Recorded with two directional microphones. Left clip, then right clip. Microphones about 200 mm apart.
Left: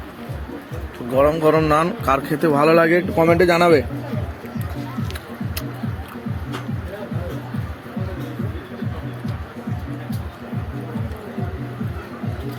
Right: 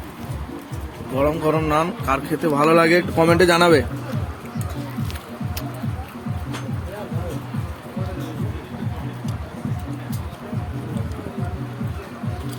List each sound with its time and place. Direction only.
1.1 s speech: 20° left (ahead or behind)
2.9 s speech: centre (ahead or behind)